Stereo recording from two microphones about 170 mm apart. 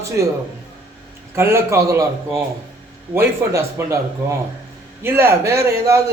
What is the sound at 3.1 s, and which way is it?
A man's voice, 15° right (ahead or behind).